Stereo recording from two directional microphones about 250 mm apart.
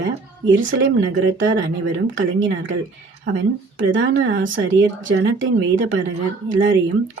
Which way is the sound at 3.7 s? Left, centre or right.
Right.